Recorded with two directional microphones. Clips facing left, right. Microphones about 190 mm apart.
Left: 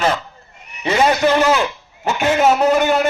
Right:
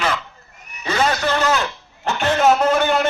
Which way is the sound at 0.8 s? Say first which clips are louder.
Left 5 dB; 15° left (ahead or behind).